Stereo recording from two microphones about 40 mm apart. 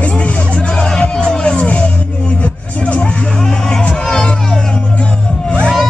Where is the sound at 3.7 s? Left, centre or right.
Left.